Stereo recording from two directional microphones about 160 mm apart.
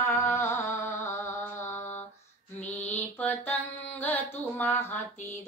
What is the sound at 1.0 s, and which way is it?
Mantra, 15° left (ahead or behind).